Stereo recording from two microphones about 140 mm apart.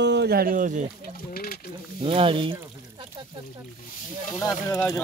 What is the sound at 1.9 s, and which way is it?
Speech, 40° right (ahead or behind).